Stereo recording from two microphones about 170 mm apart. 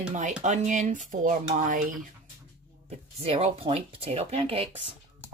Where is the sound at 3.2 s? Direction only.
35° right (ahead or behind).